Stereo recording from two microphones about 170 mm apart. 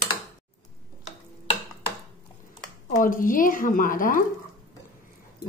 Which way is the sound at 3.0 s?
50° left (ahead or behind).